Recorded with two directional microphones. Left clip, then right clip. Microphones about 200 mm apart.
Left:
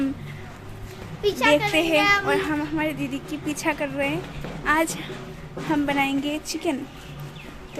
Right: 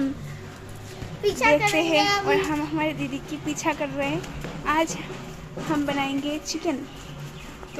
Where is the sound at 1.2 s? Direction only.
15° right (ahead or behind).